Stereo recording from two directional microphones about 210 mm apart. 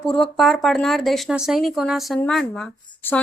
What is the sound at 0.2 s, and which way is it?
Speech, centre (ahead or behind).